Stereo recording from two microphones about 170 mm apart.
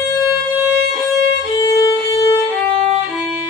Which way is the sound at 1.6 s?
20° left (ahead or behind).